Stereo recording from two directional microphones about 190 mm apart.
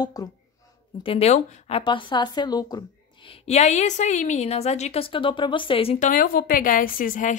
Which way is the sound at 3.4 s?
35° left (ahead or behind).